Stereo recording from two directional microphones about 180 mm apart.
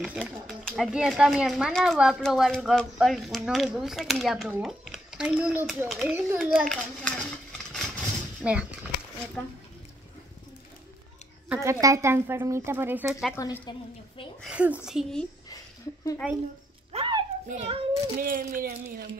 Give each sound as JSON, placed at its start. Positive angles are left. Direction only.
{"t": 0.0, "sound": "speech", "side_deg": 0}
{"t": 6.5, "sound": "a sound", "side_deg": 5}
{"t": 11.4, "sound": "speech", "side_deg": -10}
{"t": 13.3, "sound": "speech", "side_deg": 15}
{"t": 14.4, "sound": "speech", "side_deg": -5}
{"t": 16.9, "sound": "a sound", "side_deg": -30}
{"t": 17.5, "sound": "a child's voice", "side_deg": -35}
{"t": 18.2, "sound": "speech", "side_deg": -50}